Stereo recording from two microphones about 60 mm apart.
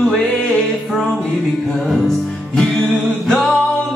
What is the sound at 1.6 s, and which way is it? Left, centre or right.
Music, centre.